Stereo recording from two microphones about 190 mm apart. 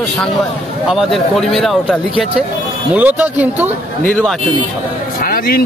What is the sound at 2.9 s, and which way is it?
Speech, 10° right (ahead or behind).